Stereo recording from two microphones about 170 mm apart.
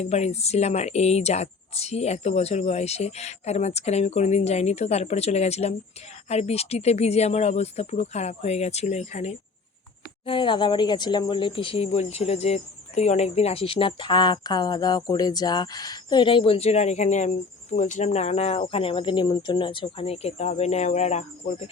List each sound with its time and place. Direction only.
0.0 s speech: 40° left (ahead or behind)
10.2 s speech: 30° left (ahead or behind)